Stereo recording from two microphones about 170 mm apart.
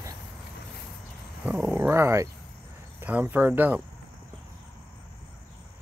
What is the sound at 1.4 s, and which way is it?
Speech, 10° right (ahead or behind).